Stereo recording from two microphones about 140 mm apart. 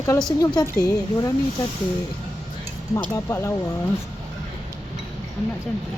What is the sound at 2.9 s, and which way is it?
Speech, 20° left (ahead or behind).